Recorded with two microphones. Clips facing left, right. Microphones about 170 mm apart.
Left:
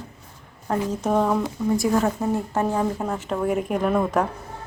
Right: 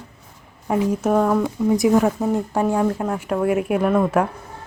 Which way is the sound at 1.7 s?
15° right (ahead or behind).